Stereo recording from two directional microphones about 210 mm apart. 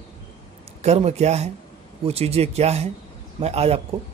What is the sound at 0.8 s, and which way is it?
A man's voice, 30° right (ahead or behind).